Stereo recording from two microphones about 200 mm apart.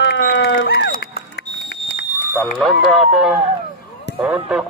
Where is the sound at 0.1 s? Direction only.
65° left (ahead or behind).